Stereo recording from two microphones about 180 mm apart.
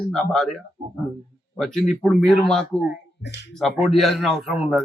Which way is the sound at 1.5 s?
Centre (ahead or behind).